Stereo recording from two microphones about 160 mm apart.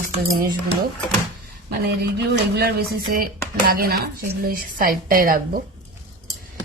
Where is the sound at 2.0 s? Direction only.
75° right (ahead or behind).